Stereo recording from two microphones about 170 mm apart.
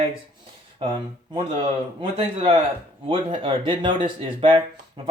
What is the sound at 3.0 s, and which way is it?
Speech, 30° right (ahead or behind).